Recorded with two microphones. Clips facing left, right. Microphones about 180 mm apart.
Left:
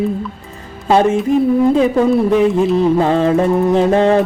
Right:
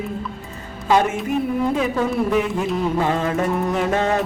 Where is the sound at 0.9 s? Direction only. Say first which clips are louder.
Left 6 dB; 30° left (ahead or behind).